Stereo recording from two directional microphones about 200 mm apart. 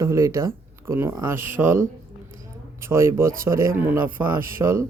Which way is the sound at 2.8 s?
15° right (ahead or behind).